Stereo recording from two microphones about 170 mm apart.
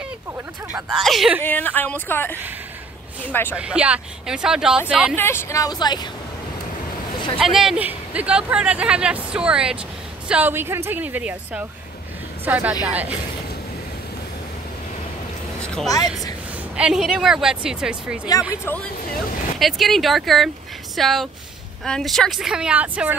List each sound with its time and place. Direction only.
0.9 s speech: centre (ahead or behind)
1.4 s speech: 10° left (ahead or behind)
3.5 s speech: 5° right (ahead or behind)
5.1 s speech: 15° left (ahead or behind)
7.3 s speech: centre (ahead or behind)
15.6 s a woman's voice: 5° left (ahead or behind)
18.7 s speech: 15° left (ahead or behind)
19.6 s speech: centre (ahead or behind)